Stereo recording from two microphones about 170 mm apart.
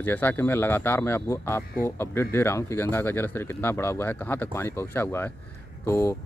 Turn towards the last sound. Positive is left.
turn(degrees=15)  # may be behind; listen again after turning